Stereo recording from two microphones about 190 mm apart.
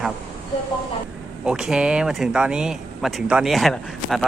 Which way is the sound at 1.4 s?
5° right (ahead or behind).